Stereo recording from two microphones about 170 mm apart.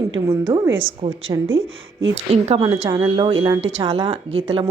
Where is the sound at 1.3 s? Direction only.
30° right (ahead or behind).